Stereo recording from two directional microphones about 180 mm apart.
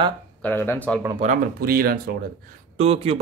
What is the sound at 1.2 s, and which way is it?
Speech, 50° right (ahead or behind).